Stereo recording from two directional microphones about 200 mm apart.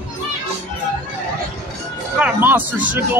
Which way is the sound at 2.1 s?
10° right (ahead or behind).